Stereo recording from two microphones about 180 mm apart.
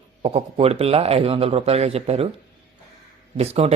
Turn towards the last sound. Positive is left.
turn(degrees=-35)  # may be behind; listen again after turning